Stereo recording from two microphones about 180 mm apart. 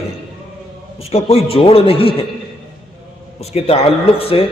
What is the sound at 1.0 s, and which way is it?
A man's voice, 35° left (ahead or behind).